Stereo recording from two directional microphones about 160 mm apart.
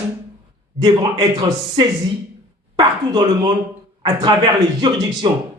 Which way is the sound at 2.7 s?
25° right (ahead or behind).